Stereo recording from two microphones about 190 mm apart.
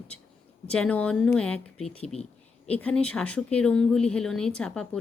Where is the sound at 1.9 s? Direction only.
35° left (ahead or behind).